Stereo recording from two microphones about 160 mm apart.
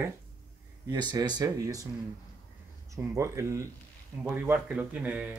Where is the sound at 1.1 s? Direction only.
25° right (ahead or behind).